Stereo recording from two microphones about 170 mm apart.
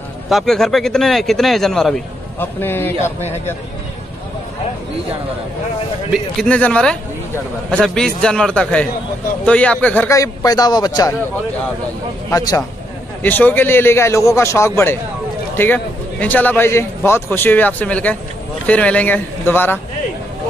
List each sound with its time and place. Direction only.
0.3 s speech: centre (ahead or behind)
6.3 s a man's voice: 5° left (ahead or behind); by 11.1 s 25° left (ahead or behind)
12.3 s a man's voice: 20° left (ahead or behind)
13.2 s a man's voice: 10° left (ahead or behind)